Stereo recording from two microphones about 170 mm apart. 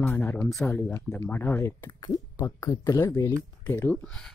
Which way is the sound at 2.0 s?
25° left (ahead or behind).